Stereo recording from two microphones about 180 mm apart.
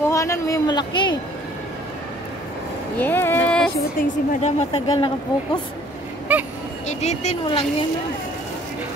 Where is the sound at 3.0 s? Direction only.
10° left (ahead or behind).